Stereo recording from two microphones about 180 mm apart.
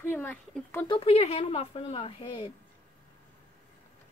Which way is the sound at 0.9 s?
30° left (ahead or behind).